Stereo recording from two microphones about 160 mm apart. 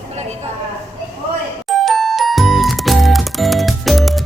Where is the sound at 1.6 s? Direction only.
Centre (ahead or behind).